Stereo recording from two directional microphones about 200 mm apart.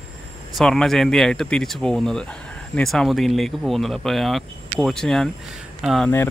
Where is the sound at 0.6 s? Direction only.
Centre (ahead or behind).